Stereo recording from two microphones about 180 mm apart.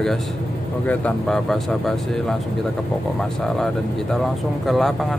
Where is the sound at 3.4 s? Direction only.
Centre (ahead or behind).